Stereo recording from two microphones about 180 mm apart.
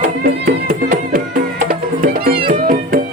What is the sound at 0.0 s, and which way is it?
Music, 50° right (ahead or behind).